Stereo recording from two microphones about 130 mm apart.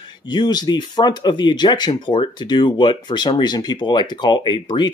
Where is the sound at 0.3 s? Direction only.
35° left (ahead or behind).